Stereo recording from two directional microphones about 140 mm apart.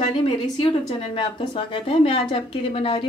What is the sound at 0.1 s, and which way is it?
A woman's voice, 35° left (ahead or behind).